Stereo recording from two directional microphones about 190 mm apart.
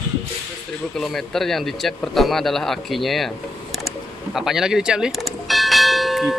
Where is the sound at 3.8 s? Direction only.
Centre (ahead or behind).